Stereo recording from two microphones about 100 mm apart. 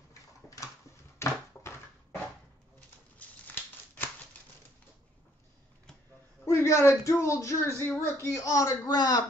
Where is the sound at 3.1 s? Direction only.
15° left (ahead or behind).